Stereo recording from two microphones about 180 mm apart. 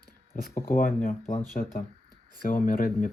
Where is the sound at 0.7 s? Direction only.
50° left (ahead or behind).